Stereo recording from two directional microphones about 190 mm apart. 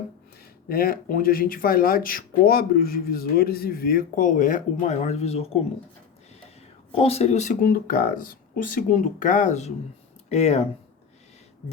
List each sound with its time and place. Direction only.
0.7 s speech: 50° left (ahead or behind); by 5.5 s 35° left (ahead or behind)
6.9 s speech: 30° left (ahead or behind)